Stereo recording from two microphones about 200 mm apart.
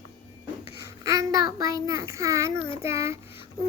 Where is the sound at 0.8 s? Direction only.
15° right (ahead or behind).